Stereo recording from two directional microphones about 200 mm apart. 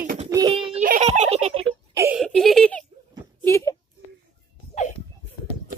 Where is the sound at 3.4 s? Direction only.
15° left (ahead or behind).